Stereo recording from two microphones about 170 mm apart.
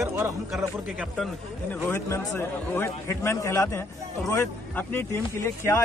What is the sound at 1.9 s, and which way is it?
A man's voice, 15° left (ahead or behind).